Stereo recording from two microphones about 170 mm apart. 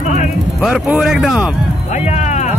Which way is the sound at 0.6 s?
5° right (ahead or behind).